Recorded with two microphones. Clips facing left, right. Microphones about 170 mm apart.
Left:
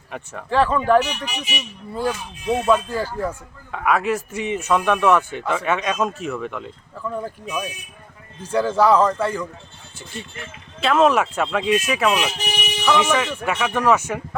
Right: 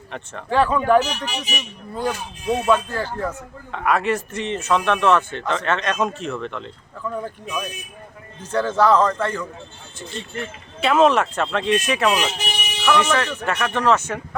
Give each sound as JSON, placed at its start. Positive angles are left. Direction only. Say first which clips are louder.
{"t": 0.1, "sound": "speech", "louder": "even", "side_deg": 5}
{"t": 1.1, "sound": "speech", "louder": "right 1 dB", "side_deg": -45}
{"t": 1.5, "sound": "speech", "louder": "left 1 dB", "side_deg": 5}